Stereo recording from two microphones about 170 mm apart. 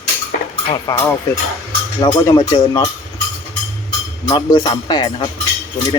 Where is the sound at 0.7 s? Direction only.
25° left (ahead or behind).